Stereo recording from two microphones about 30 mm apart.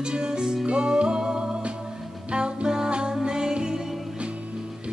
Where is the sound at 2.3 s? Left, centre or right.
Right.